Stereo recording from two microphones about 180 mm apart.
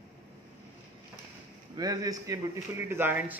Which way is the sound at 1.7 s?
20° right (ahead or behind).